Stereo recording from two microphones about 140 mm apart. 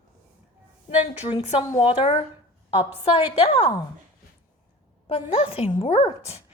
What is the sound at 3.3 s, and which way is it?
Speech, 45° left (ahead or behind).